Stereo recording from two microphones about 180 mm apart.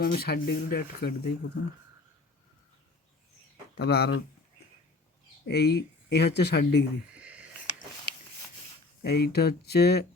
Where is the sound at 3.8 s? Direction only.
65° left (ahead or behind).